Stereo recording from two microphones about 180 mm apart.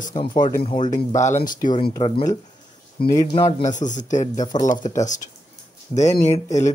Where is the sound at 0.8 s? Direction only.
45° left (ahead or behind).